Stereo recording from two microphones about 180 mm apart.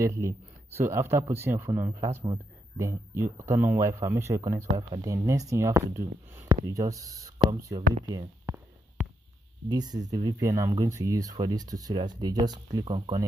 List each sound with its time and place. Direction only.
0.0 s speech: 15° right (ahead or behind)
7.5 s a sound: 20° right (ahead or behind)
9.7 s speech: 20° right (ahead or behind)